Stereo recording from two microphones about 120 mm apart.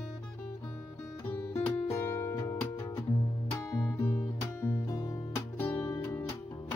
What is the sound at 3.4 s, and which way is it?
Music, 25° left (ahead or behind).